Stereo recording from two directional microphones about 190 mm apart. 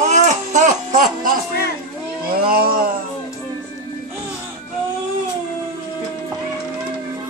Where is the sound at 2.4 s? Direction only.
50° right (ahead or behind).